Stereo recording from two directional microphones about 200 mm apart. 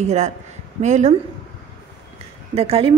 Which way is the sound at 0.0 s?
35° right (ahead or behind).